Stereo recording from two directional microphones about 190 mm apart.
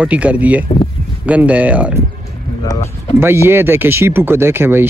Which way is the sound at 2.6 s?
20° left (ahead or behind).